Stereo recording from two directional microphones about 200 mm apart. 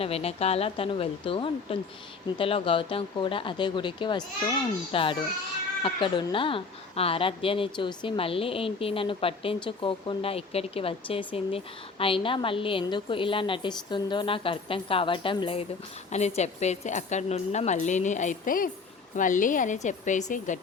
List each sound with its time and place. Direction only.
0.0 s a woman's voice: 30° left (ahead or behind)